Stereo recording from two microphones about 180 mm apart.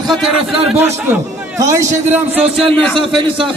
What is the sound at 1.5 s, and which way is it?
Speech, 20° right (ahead or behind).